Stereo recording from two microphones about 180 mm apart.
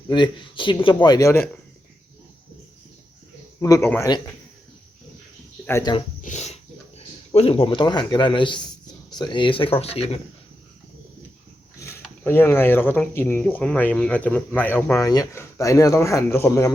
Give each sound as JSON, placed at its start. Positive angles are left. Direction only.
{"t": 0.1, "sound": "speech", "side_deg": 25}
{"t": 3.6, "sound": "speech", "side_deg": 15}
{"t": 5.6, "sound": "speech", "side_deg": 15}
{"t": 6.2, "sound": "speech", "side_deg": 40}
{"t": 12.2, "sound": "speech", "side_deg": 10}